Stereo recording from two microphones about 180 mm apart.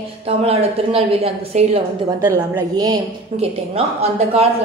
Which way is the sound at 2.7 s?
20° right (ahead or behind).